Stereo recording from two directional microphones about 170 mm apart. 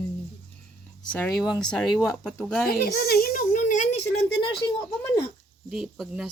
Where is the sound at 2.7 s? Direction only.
65° left (ahead or behind); by 4.0 s 45° left (ahead or behind).